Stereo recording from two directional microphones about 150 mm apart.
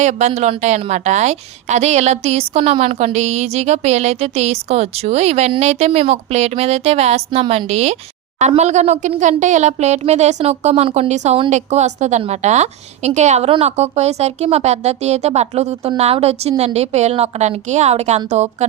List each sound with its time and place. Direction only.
0.0 s a woman's voice: 50° right (ahead or behind)